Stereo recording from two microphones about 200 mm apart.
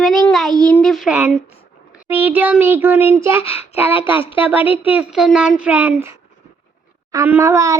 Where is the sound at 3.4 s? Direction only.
30° left (ahead or behind).